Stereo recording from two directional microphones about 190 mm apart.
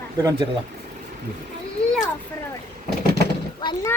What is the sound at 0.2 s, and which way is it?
Speech, 20° right (ahead or behind).